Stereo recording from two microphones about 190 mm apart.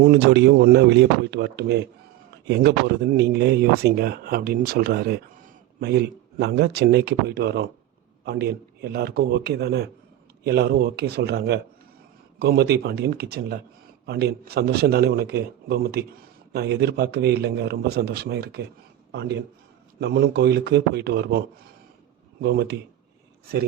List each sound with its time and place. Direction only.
0.0 s speech: 60° right (ahead or behind)